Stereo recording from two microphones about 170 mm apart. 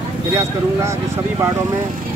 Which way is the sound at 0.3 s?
15° right (ahead or behind).